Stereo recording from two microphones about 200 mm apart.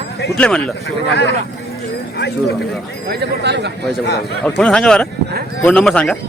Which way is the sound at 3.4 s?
55° right (ahead or behind).